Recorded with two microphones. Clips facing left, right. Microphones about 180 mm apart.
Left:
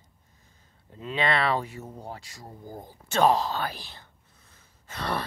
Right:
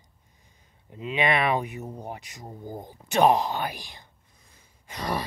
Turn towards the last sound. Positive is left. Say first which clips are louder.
# right 1 dB
turn(degrees=-10)  # may be behind; listen again after turning